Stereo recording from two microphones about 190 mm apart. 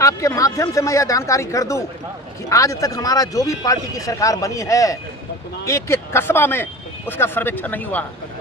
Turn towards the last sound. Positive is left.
turn(degrees=10)  # may be behind; listen again after turning